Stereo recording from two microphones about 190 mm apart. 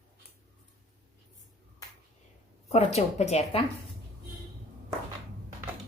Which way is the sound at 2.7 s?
35° left (ahead or behind).